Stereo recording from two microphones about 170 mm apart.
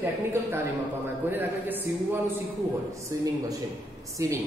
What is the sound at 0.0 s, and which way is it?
A man's voice, 15° right (ahead or behind).